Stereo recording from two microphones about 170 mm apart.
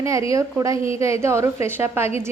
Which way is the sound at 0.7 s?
30° left (ahead or behind).